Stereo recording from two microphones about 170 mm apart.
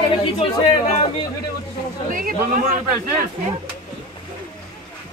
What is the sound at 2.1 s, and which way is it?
Speech, 55° right (ahead or behind).